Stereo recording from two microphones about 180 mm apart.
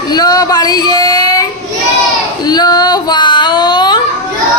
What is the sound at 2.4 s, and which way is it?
Child singing, 25° left (ahead or behind).